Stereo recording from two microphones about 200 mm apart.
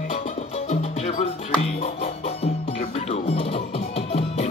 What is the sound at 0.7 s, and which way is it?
Music, 35° left (ahead or behind).